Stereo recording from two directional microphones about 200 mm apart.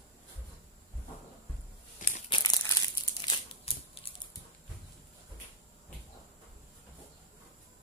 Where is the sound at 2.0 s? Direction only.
40° left (ahead or behind).